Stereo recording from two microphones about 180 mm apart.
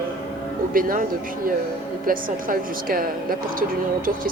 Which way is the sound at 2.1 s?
50° right (ahead or behind).